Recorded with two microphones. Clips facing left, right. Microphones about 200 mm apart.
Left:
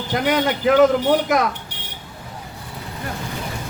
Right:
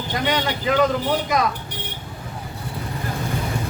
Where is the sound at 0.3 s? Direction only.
60° left (ahead or behind).